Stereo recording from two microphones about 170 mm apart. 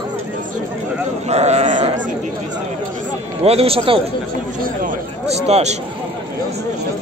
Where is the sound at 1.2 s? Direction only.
40° right (ahead or behind).